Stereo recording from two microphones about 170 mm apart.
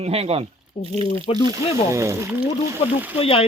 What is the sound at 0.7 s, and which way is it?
Speech, 35° left (ahead or behind).